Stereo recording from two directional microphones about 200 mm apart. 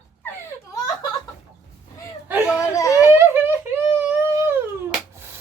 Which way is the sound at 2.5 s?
15° left (ahead or behind).